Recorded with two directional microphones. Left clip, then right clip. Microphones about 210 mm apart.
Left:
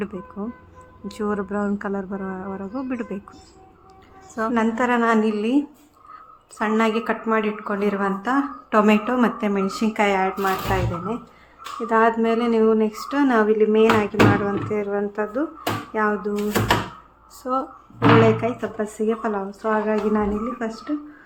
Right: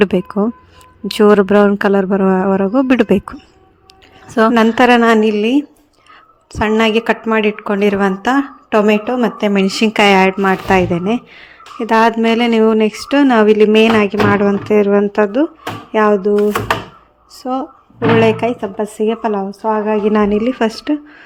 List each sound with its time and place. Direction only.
0.0 s speech: 40° right (ahead or behind)
4.4 s a woman's voice: 40° right (ahead or behind)
8.8 s a woman's voice: 20° right (ahead or behind)
9.5 s speech: 40° right (ahead or behind)
17.3 s a woman's voice: 25° right (ahead or behind)
20.1 s speech: 40° right (ahead or behind)